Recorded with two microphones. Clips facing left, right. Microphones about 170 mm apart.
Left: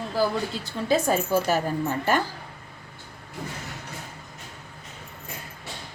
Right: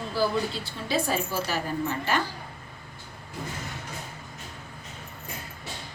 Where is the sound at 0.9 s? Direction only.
50° left (ahead or behind).